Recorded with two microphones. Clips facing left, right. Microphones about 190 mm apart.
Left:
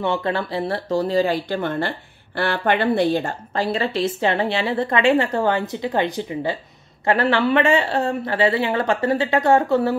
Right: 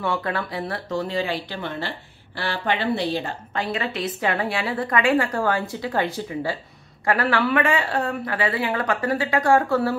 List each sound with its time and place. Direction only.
0.0 s speech: 25° left (ahead or behind); by 3.3 s 50° left (ahead or behind)
3.5 s a woman's voice: 30° left (ahead or behind)